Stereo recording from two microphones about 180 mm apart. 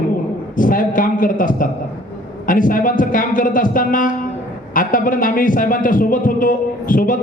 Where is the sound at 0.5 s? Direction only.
50° left (ahead or behind).